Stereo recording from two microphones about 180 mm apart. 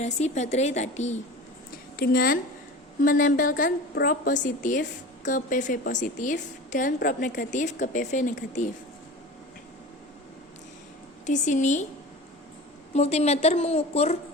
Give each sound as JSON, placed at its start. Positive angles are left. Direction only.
{"t": 0.0, "sound": "a woman's voice", "side_deg": 40}
{"t": 2.0, "sound": "a woman's voice", "side_deg": 55}
{"t": 11.3, "sound": "a woman's voice", "side_deg": 40}
{"t": 12.9, "sound": "a woman's voice", "side_deg": 35}